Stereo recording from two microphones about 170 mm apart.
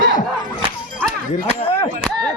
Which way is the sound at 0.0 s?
50° left (ahead or behind).